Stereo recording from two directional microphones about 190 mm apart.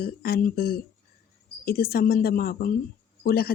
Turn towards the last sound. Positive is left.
turn(degrees=55)  # may be behind; listen again after turning